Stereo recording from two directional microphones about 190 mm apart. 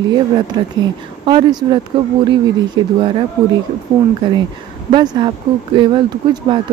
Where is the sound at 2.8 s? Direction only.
25° right (ahead or behind).